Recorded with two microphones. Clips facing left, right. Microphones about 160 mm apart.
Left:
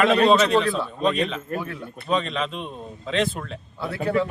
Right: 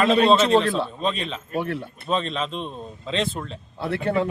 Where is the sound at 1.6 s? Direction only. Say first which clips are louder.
Right 5 dB; 70° right (ahead or behind).